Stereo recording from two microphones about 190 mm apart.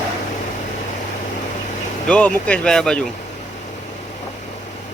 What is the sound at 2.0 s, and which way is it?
Speech, 5° left (ahead or behind).